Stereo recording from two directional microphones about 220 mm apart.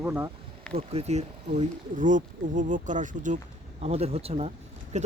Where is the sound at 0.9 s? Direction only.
30° right (ahead or behind).